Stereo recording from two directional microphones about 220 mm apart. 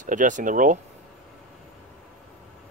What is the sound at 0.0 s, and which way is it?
Speech, 35° right (ahead or behind).